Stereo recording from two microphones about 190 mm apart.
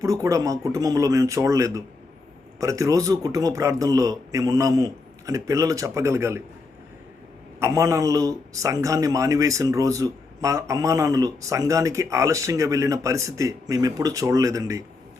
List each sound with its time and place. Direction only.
0.0 s speech: 15° right (ahead or behind)
7.6 s speech: 15° right (ahead or behind)